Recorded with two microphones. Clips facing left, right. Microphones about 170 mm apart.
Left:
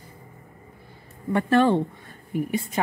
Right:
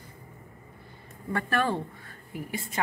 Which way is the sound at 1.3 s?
25° left (ahead or behind).